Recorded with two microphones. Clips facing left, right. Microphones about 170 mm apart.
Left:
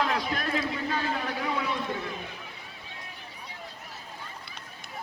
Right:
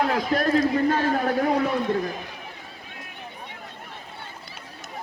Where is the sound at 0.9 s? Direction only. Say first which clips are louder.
Right 8 dB; 70° right (ahead or behind).